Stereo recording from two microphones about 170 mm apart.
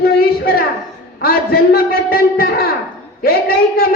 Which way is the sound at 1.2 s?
60° left (ahead or behind).